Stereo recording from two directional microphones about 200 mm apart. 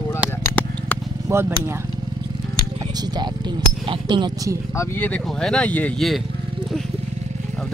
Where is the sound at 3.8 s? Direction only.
25° right (ahead or behind).